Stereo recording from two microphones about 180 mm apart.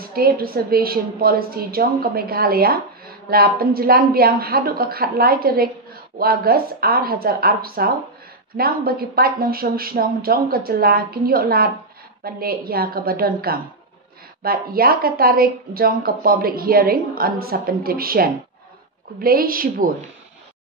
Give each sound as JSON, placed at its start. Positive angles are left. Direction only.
{"t": 0.0, "sound": "a woman's voice", "side_deg": -55}